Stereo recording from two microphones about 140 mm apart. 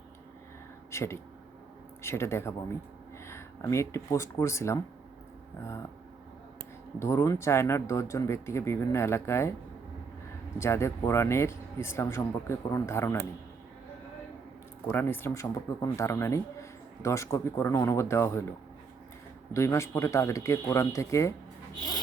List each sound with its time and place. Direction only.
0.9 s speech: 20° left (ahead or behind)
7.0 s speech: 20° left (ahead or behind)
10.6 s speech: 20° left (ahead or behind)
14.8 s speech: 15° left (ahead or behind)
19.5 s speech: 20° left (ahead or behind)